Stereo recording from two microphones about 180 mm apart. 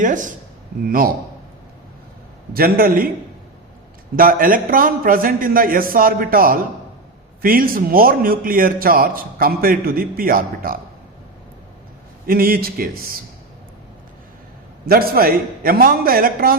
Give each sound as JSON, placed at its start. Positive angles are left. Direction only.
{"t": 0.0, "sound": "a man's voice", "side_deg": -45}
{"t": 2.5, "sound": "a man's voice", "side_deg": -55}
{"t": 4.1, "sound": "a man's voice", "side_deg": -50}
{"t": 12.2, "sound": "a man's voice", "side_deg": -55}
{"t": 14.8, "sound": "a man's voice", "side_deg": -55}